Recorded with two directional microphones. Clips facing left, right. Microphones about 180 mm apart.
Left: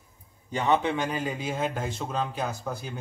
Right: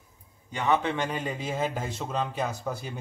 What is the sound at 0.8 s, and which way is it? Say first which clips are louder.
A man's voice: left 1 dB; 5° left (ahead or behind).